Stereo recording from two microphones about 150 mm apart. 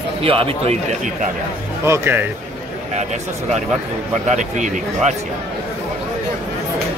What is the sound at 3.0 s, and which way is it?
Speech, 50° right (ahead or behind).